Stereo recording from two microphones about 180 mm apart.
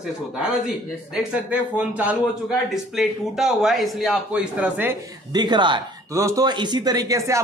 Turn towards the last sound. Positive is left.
turn(degrees=-15)  # may be behind; listen again after turning